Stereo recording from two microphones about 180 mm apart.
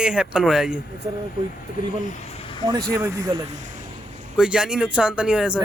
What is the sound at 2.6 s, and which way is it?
Speech, 20° right (ahead or behind).